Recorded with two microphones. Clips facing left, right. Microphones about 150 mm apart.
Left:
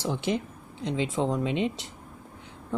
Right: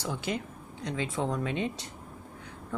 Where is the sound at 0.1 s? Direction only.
25° left (ahead or behind).